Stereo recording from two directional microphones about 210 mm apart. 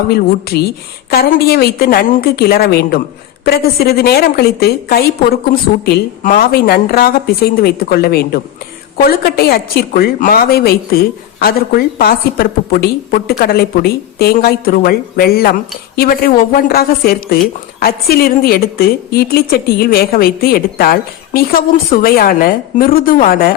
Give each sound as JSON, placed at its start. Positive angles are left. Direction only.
{"t": 0.1, "sound": "a woman's voice", "side_deg": 50}